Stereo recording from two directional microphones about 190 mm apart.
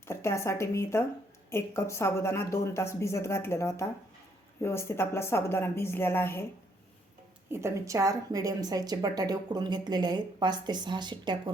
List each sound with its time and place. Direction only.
0.1 s speech: 15° left (ahead or behind)
7.5 s a woman's voice: 15° right (ahead or behind)